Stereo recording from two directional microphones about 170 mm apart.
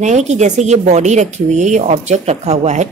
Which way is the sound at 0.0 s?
45° right (ahead or behind).